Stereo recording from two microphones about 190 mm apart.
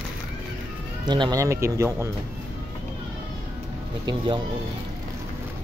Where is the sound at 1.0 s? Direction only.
25° right (ahead or behind).